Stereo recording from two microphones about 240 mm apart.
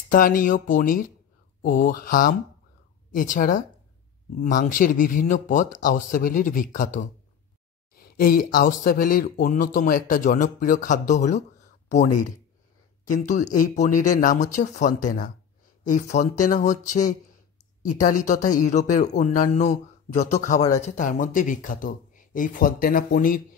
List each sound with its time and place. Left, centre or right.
0.1 s speech: left
13.0 s speech: left
17.8 s speech: left